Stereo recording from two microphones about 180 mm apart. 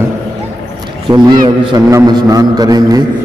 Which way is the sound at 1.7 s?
20° right (ahead or behind).